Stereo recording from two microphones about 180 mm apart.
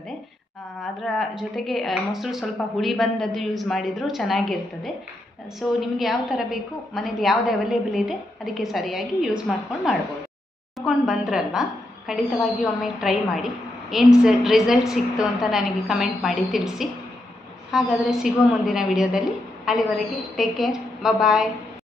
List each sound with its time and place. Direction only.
1.0 s a woman's voice: centre (ahead or behind)